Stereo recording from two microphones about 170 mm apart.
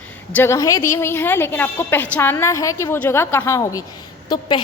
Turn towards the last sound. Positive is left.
turn(degrees=25)  # may be behind; listen again after turning